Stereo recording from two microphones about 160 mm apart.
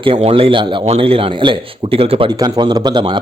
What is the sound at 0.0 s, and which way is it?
Speech, 35° right (ahead or behind).